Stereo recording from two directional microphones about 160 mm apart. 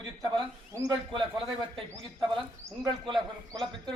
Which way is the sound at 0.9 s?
30° right (ahead or behind).